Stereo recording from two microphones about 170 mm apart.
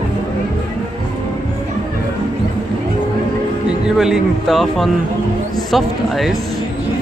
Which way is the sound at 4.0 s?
Centre (ahead or behind).